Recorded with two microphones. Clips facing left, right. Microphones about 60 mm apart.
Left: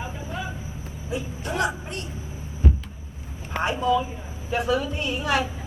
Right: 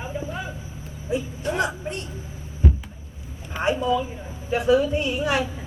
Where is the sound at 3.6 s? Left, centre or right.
Left.